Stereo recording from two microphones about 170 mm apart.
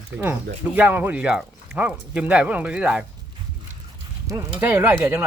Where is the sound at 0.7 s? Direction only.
10° right (ahead or behind).